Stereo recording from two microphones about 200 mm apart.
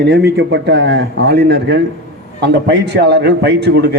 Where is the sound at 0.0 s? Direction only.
55° right (ahead or behind).